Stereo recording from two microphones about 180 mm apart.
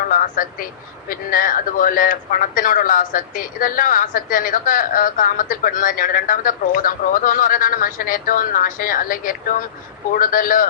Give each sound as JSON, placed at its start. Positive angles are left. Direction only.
{"t": 0.1, "sound": "speech", "side_deg": 50}